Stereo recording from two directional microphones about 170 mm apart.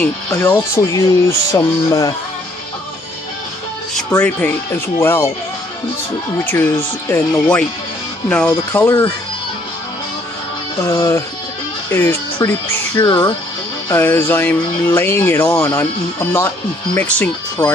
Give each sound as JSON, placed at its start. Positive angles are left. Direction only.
{"t": 0.0, "sound": "speech", "side_deg": 10}
{"t": 1.5, "sound": "music", "side_deg": 20}
{"t": 4.2, "sound": "speech", "side_deg": 10}
{"t": 6.4, "sound": "speech", "side_deg": 10}
{"t": 10.8, "sound": "speech", "side_deg": 20}
{"t": 13.0, "sound": "music", "side_deg": 30}
{"t": 13.8, "sound": "speech", "side_deg": 15}